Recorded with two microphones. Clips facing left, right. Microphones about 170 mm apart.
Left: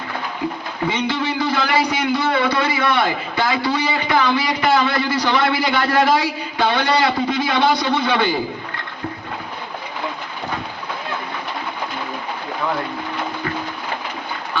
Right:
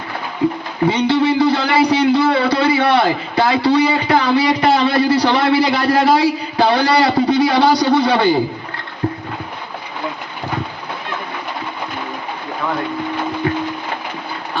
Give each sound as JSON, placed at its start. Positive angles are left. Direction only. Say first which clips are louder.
{"t": 0.9, "sound": "a man's voice", "louder": "right 7 dB", "side_deg": -35}